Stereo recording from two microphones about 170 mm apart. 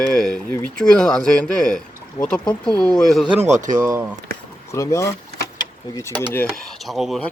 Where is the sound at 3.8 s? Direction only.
10° right (ahead or behind).